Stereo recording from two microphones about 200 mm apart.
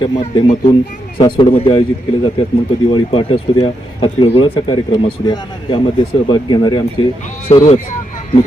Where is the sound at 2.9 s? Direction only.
25° left (ahead or behind).